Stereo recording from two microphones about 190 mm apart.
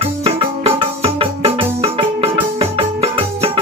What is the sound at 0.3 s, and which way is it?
Music, 30° right (ahead or behind).